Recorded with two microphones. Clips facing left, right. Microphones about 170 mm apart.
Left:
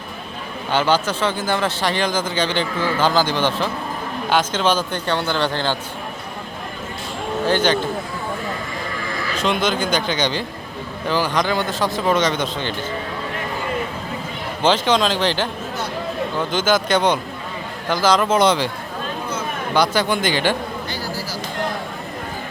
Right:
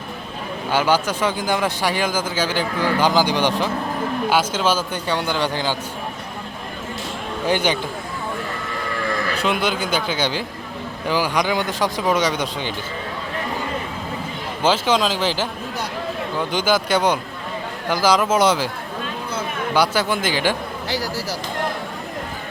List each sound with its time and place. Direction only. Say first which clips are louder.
0.7 s speech: even; 10° right (ahead or behind)
7.4 s speech: left 2 dB; 10° right (ahead or behind)
9.4 s speech: left 4 dB; 5° right (ahead or behind)
14.6 s speech: left 1 dB; 10° right (ahead or behind)
19.7 s speech: left 1 dB; 10° right (ahead or behind)
20.9 s speech: right 3 dB; 80° right